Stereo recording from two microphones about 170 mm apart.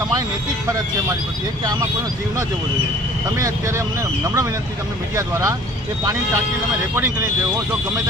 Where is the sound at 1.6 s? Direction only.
25° right (ahead or behind).